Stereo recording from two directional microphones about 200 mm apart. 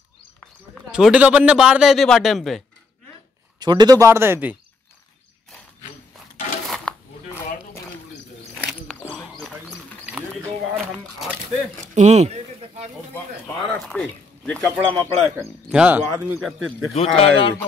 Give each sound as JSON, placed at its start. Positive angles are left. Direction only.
{"t": 0.9, "sound": "speech", "side_deg": -5}
{"t": 3.5, "sound": "speech", "side_deg": -20}
{"t": 6.7, "sound": "dishes", "side_deg": 5}
{"t": 8.5, "sound": "a sound", "side_deg": 0}
{"t": 11.9, "sound": "a sound", "side_deg": -35}
{"t": 13.1, "sound": "speech", "side_deg": 5}
{"t": 16.9, "sound": "speech", "side_deg": 30}